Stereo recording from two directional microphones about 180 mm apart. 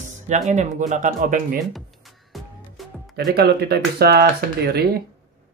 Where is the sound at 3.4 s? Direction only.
65° right (ahead or behind).